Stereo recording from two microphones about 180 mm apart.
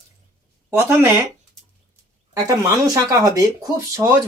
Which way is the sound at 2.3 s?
20° right (ahead or behind).